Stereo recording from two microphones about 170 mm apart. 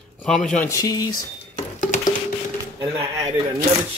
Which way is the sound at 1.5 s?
45° left (ahead or behind).